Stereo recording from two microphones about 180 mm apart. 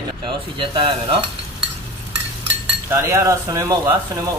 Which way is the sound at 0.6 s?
30° right (ahead or behind).